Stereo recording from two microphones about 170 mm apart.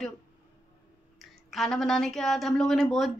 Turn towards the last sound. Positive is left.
turn(degrees=0)  # may be behind; listen again after turning